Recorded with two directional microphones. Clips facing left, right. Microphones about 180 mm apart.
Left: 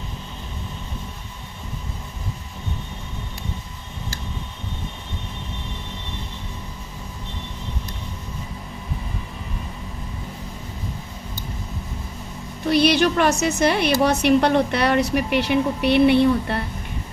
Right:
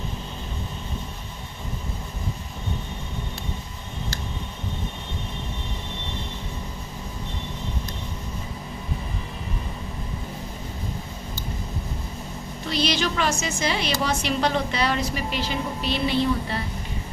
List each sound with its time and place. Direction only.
12.6 s a woman's voice: 60° left (ahead or behind)